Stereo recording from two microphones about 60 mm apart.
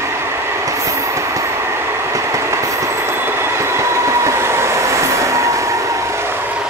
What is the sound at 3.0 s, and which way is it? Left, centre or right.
Train, right.